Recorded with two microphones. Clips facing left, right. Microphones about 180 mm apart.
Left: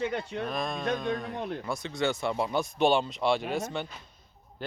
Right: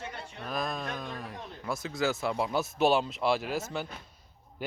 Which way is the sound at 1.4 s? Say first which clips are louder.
Left 10 dB; 70° left (ahead or behind).